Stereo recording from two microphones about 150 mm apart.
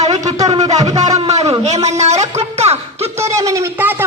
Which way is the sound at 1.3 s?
45° right (ahead or behind).